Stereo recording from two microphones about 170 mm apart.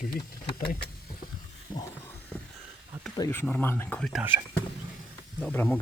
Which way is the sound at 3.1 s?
20° left (ahead or behind).